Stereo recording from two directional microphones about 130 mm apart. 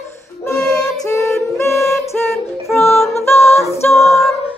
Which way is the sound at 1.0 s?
20° left (ahead or behind).